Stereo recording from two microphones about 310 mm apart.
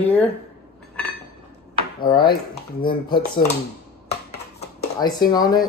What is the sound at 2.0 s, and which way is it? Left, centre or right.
Speech, centre.